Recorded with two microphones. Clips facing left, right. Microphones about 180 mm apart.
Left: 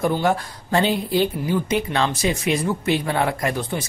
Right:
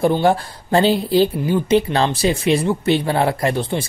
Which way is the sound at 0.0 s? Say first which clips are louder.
Right 4 dB; 30° right (ahead or behind).